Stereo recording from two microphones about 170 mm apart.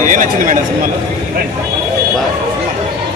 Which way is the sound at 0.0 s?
50° right (ahead or behind).